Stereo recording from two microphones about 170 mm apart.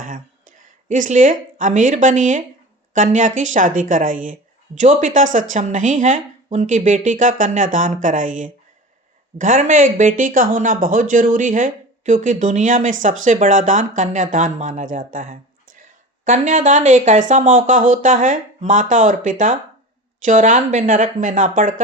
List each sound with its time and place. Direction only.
0.0 s speech: 50° right (ahead or behind)